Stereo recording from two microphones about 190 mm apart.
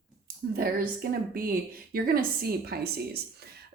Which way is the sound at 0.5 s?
50° right (ahead or behind).